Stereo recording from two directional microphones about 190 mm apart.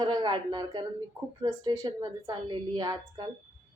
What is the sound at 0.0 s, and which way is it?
A woman's voice, 25° right (ahead or behind).